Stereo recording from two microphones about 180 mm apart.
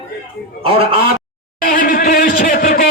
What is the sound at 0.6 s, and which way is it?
Speech, 30° right (ahead or behind).